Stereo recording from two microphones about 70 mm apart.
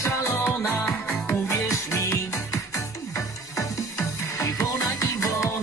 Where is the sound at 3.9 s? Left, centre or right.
Left.